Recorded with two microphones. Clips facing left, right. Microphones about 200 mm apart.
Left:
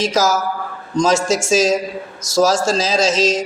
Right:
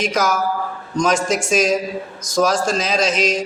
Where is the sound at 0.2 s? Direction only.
90° left.